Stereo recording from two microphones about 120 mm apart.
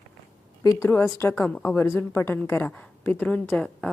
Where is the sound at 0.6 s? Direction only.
20° left (ahead or behind).